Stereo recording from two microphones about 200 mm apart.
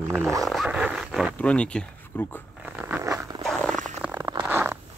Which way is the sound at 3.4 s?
Centre (ahead or behind).